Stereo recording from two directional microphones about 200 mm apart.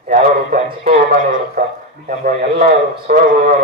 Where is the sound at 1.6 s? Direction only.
45° right (ahead or behind).